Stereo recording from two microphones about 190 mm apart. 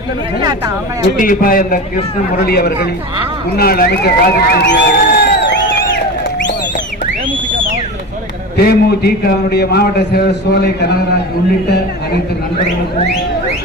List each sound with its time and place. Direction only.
1.2 s a man's voice: 45° left (ahead or behind)
8.5 s a man's voice: 55° left (ahead or behind)